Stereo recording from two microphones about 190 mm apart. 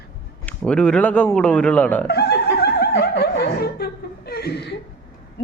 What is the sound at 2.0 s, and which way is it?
Chuckle, 60° left (ahead or behind).